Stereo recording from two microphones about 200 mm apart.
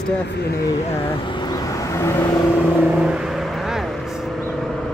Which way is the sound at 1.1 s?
25° left (ahead or behind).